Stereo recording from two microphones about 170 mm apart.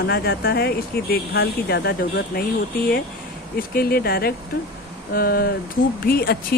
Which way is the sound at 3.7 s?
65° left (ahead or behind).